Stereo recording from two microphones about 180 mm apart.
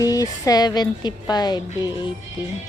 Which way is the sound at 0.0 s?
20° left (ahead or behind).